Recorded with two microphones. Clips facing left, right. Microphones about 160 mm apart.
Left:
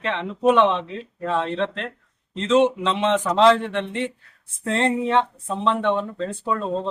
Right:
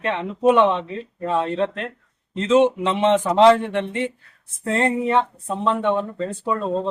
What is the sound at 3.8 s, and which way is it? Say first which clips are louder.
Speech: right 2 dB; 55° right (ahead or behind).